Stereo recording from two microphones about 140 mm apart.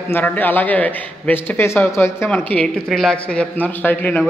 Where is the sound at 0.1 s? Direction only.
10° left (ahead or behind).